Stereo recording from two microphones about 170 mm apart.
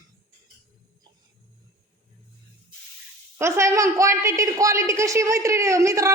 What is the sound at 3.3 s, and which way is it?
A woman's voice, 15° right (ahead or behind).